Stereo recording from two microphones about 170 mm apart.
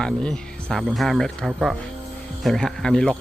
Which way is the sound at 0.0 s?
5° left (ahead or behind).